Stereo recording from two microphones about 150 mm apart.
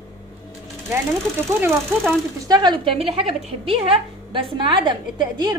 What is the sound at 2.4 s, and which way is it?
A woman's voice, 30° right (ahead or behind).